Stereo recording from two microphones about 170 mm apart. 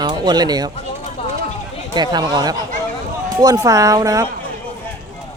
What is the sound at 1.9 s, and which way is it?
Speech, 25° right (ahead or behind).